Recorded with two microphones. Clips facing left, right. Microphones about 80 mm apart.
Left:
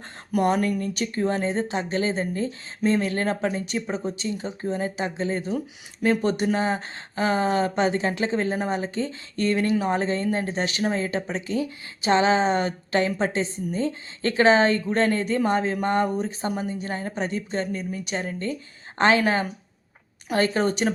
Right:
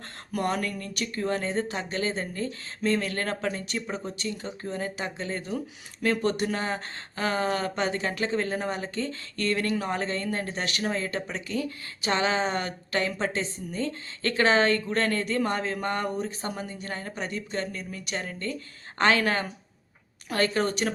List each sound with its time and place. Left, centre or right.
0.3 s speech: centre